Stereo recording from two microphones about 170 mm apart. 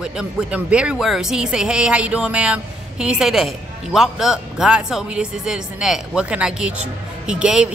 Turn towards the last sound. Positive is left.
turn(degrees=-5)  # may be behind; listen again after turning